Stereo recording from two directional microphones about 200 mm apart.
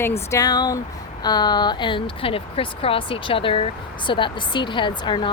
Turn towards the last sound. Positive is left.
turn(degrees=25)  # may be behind; listen again after turning